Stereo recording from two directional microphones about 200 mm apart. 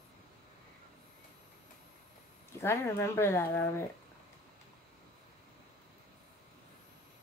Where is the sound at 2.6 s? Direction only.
15° left (ahead or behind).